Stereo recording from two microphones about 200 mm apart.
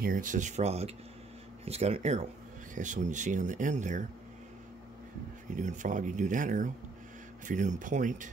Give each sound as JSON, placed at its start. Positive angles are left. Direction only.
{"t": 0.0, "sound": "speech", "side_deg": -40}
{"t": 5.5, "sound": "speech", "side_deg": -40}